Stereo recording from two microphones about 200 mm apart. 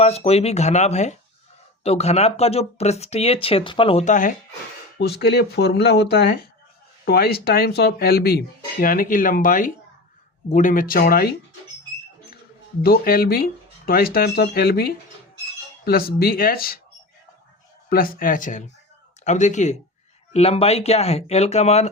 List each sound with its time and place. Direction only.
0.0 s speech: 30° left (ahead or behind)
4.9 s speech: 55° left (ahead or behind)
12.8 s speech: 50° left (ahead or behind)
17.8 s speech: 45° left (ahead or behind)